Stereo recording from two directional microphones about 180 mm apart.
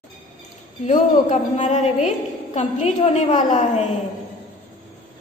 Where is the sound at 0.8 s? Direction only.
45° left (ahead or behind).